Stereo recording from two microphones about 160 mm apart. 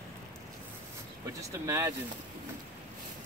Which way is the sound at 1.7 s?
15° right (ahead or behind).